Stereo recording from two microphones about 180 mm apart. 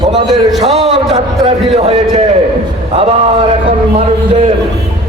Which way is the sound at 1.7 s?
30° right (ahead or behind).